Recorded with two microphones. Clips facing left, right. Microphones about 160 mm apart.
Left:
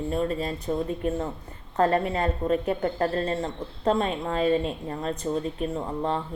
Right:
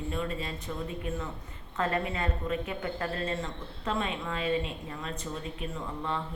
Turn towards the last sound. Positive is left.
turn(degrees=40)  # may be behind; listen again after turning